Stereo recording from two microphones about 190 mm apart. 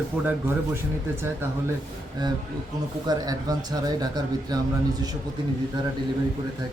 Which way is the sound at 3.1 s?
20° right (ahead or behind).